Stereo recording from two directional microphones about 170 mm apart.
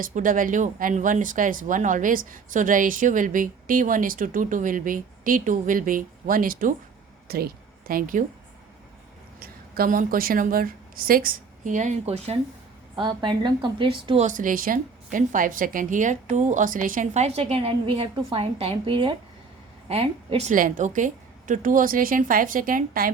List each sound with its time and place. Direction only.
0.0 s a woman's voice: 50° right (ahead or behind)
9.4 s a woman's voice: 60° right (ahead or behind); by 12.4 s 40° right (ahead or behind)
13.0 s a woman's voice: 25° right (ahead or behind)
14.3 s speech: 50° right (ahead or behind)